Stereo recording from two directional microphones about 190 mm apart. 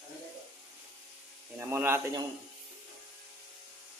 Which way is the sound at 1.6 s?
15° right (ahead or behind).